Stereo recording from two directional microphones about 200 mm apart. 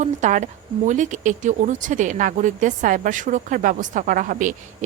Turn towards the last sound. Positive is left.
turn(degrees=-40)  # may be behind; listen again after turning